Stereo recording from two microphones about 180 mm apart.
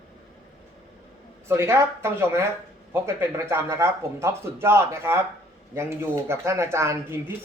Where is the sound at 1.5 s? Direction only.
15° right (ahead or behind).